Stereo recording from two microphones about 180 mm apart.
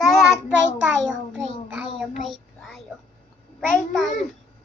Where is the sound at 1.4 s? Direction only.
5° right (ahead or behind).